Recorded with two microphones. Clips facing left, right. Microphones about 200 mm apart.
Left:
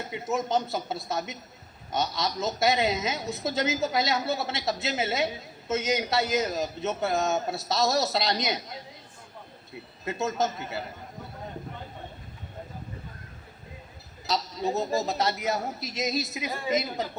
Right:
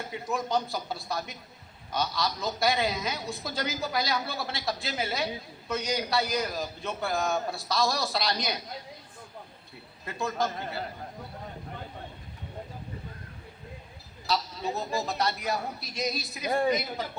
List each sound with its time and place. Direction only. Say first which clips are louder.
0.0 s a woman's voice: left 3 dB; 20° left (ahead or behind)
10.1 s a woman's voice: left 3 dB; 20° left (ahead or behind)
14.3 s a woman's voice: left 2 dB; 20° left (ahead or behind)